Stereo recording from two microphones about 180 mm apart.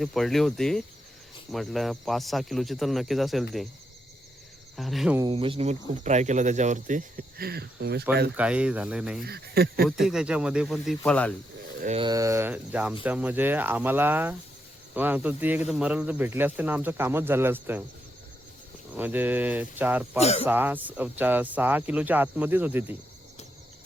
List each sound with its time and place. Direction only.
0.0 s speech: centre (ahead or behind)
4.8 s speech: centre (ahead or behind)
5.3 s speech: 30° right (ahead or behind); by 8.0 s 65° right (ahead or behind)
8.4 s speech: 5° right (ahead or behind)
9.2 s speech: 60° right (ahead or behind)
10.0 s speech: 5° right (ahead or behind)
11.9 s speech: 20° right (ahead or behind)
18.9 s speech: 10° right (ahead or behind)
20.1 s speech: 35° left (ahead or behind)
20.5 s speech: 10° right (ahead or behind)